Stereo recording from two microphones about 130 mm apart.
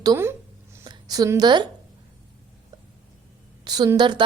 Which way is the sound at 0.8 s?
30° right (ahead or behind).